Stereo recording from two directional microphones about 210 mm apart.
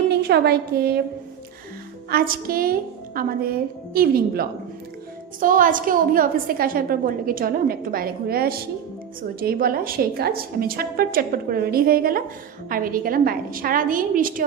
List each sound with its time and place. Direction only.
0.2 s a woman's voice: 50° right (ahead or behind)
2.0 s a woman's voice: 45° right (ahead or behind)